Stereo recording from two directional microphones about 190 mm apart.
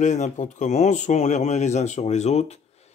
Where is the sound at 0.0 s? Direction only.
40° left (ahead or behind).